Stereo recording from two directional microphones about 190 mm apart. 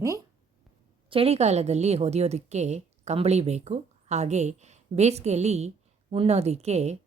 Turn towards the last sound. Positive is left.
turn(degrees=-35)  # may be behind; listen again after turning